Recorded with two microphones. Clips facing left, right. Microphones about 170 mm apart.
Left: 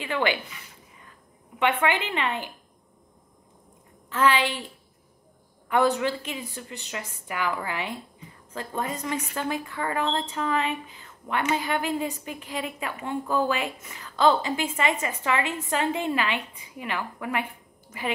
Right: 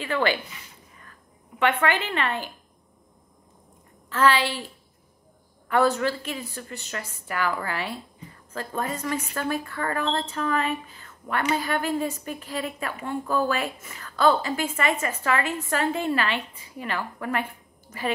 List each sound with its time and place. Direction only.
0.0 s speech: 15° left (ahead or behind)
1.6 s a woman's voice: 15° left (ahead or behind)
4.1 s a woman's voice: 15° left (ahead or behind)
5.7 s a woman's voice: 15° left (ahead or behind)